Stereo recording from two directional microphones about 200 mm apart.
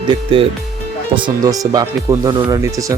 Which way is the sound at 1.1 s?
20° right (ahead or behind).